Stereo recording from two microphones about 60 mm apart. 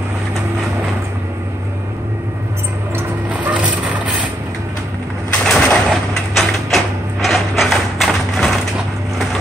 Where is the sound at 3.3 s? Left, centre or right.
Right.